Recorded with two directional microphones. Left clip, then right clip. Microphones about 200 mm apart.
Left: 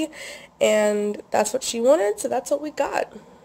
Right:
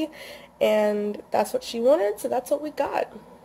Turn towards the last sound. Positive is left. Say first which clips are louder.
# left 2 dB
turn(degrees=10)  # may be behind; listen again after turning